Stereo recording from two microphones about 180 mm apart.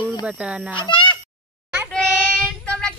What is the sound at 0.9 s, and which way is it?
Meow, 25° left (ahead or behind).